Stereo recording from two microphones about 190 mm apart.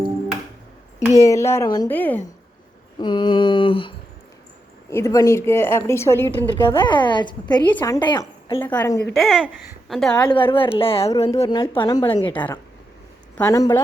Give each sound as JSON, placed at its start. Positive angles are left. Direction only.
{"t": 0.9, "sound": "a woman's voice", "side_deg": 15}
{"t": 1.9, "sound": "a woman's voice", "side_deg": 10}
{"t": 3.0, "sound": "a woman's voice", "side_deg": 25}
{"t": 4.9, "sound": "a woman's voice", "side_deg": 15}
{"t": 6.8, "sound": "a woman's voice", "side_deg": 25}
{"t": 7.7, "sound": "a woman's voice", "side_deg": 10}
{"t": 7.9, "sound": "a woman's voice", "side_deg": 20}
{"t": 9.1, "sound": "speech", "side_deg": 0}
{"t": 10.2, "sound": "a woman's voice", "side_deg": 25}
{"t": 13.3, "sound": "a woman's voice", "side_deg": 10}